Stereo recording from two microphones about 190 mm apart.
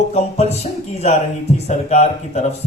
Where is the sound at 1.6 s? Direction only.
35° left (ahead or behind).